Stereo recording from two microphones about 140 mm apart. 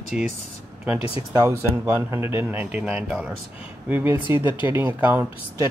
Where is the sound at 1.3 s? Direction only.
20° right (ahead or behind).